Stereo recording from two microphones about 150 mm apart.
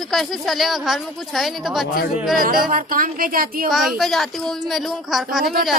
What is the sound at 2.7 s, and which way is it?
Speech, 70° right (ahead or behind).